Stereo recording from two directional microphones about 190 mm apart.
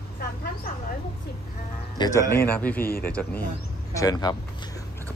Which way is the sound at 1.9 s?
15° left (ahead or behind).